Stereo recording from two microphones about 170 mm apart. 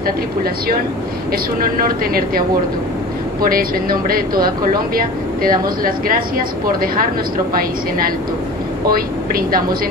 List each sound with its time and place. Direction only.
0.0 s speech: 60° right (ahead or behind)
3.4 s speech: 60° right (ahead or behind)
8.9 s speech: 60° right (ahead or behind)